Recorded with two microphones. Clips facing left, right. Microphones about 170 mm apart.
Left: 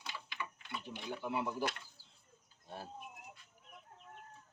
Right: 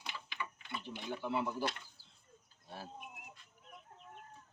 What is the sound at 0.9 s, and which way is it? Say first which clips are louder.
Speech: right 2 dB; 10° left (ahead or behind).